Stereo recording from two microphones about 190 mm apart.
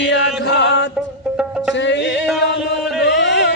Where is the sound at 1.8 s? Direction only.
70° left (ahead or behind).